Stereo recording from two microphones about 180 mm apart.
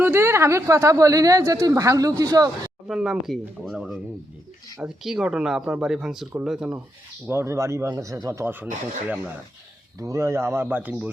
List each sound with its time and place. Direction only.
0.0 s speech: 15° right (ahead or behind)
2.8 s speech: 5° right (ahead or behind)